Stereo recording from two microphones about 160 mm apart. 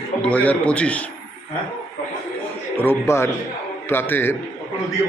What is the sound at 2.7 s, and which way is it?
A man's voice, 15° left (ahead or behind).